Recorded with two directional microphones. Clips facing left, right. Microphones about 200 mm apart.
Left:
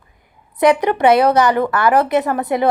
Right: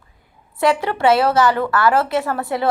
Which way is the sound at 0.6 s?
20° left (ahead or behind).